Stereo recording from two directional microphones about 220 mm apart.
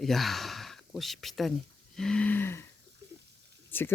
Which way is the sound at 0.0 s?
Centre (ahead or behind).